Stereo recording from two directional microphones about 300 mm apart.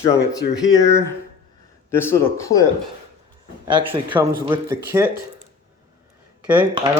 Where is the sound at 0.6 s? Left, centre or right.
Centre.